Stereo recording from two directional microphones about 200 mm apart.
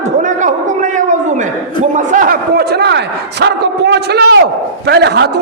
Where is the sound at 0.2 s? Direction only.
40° right (ahead or behind).